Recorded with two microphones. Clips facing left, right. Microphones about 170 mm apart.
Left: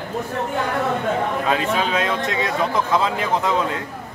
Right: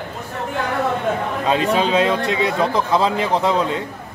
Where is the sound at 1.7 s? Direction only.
25° right (ahead or behind).